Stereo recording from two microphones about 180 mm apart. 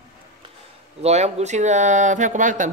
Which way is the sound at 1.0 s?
40° right (ahead or behind).